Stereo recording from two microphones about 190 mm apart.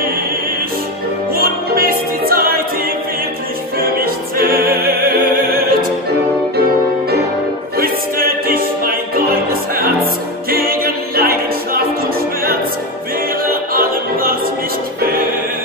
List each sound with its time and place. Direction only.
1.3 s music: 50° right (ahead or behind)
3.8 s opera: 50° right (ahead or behind)
7.7 s music: 50° right (ahead or behind)
13.5 s music: 50° right (ahead or behind)